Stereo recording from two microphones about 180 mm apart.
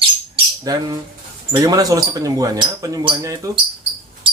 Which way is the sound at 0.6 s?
20° right (ahead or behind).